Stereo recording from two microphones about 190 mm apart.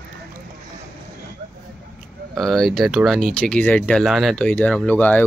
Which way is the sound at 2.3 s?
Centre (ahead or behind).